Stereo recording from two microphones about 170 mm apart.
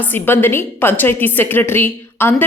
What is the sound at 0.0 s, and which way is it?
A woman's voice, 10° left (ahead or behind).